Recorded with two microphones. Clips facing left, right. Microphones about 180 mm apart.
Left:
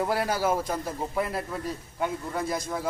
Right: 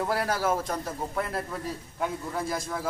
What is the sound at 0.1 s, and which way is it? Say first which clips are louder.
A man's voice: left 1 dB; centre (ahead or behind).